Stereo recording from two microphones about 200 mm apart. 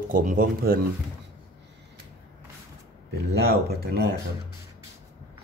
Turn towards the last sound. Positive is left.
turn(degrees=-55)  # may be behind; listen again after turning